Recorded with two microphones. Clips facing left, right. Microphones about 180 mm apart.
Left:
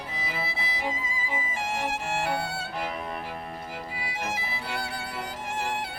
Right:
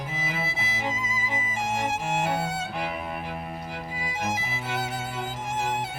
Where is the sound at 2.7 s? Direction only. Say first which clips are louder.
Right 1 dB; 10° right (ahead or behind).